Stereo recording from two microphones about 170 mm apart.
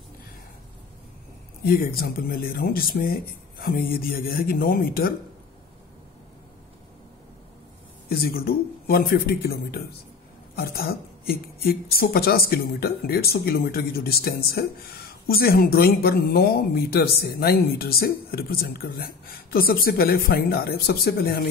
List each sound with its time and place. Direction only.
1.6 s speech: 65° left (ahead or behind)
8.1 s speech: 60° left (ahead or behind)